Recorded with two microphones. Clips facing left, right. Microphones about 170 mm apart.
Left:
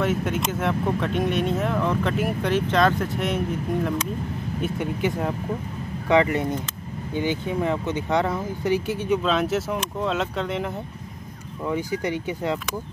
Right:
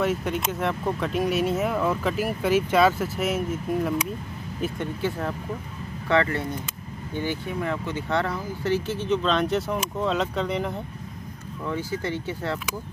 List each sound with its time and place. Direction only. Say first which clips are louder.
0.0 s speech: left 1 dB; centre (ahead or behind)
5.0 s speech: left 3 dB; 15° left (ahead or behind)
11.6 s speech: left 3 dB; 15° left (ahead or behind)